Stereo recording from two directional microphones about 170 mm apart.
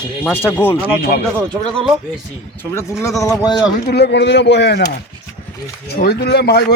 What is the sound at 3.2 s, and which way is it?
Speech, 20° left (ahead or behind).